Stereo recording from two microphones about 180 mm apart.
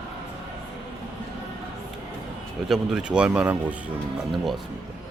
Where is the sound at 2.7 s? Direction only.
5° right (ahead or behind).